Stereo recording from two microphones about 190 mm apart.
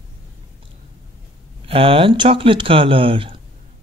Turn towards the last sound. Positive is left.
turn(degrees=-30)  # may be behind; listen again after turning